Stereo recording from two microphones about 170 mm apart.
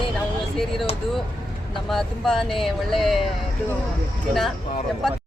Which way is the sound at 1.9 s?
Centre (ahead or behind).